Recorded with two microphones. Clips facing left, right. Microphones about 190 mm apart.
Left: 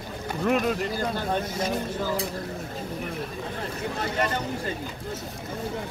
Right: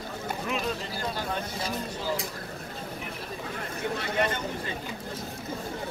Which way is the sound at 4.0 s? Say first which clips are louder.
Left 2 dB; 40° left (ahead or behind).